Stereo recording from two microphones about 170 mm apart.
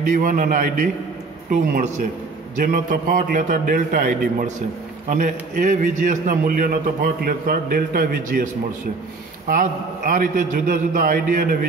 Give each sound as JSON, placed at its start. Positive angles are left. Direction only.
{"t": 0.0, "sound": "a man's voice", "side_deg": -50}
{"t": 9.5, "sound": "a man's voice", "side_deg": -55}